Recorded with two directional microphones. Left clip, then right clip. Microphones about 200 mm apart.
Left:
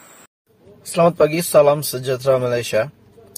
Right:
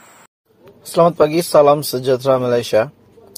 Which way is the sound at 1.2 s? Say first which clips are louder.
Right 2 dB; 15° right (ahead or behind).